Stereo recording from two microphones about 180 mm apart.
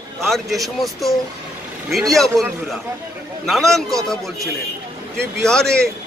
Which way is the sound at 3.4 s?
Centre (ahead or behind).